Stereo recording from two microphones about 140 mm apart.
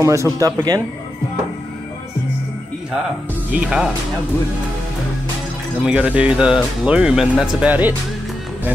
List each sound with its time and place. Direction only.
0.0 s speech: 20° right (ahead or behind)
3.5 s speech: 5° right (ahead or behind)
5.8 s speech: 5° right (ahead or behind)